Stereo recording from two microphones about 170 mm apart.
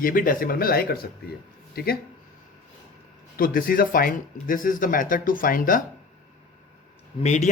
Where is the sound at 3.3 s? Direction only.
55° left (ahead or behind).